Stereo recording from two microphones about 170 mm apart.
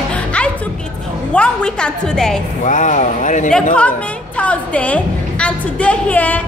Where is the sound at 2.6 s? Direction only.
45° left (ahead or behind).